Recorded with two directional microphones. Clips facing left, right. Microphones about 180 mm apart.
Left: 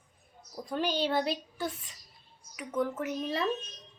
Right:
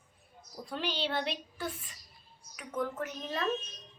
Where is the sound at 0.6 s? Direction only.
45° left (ahead or behind).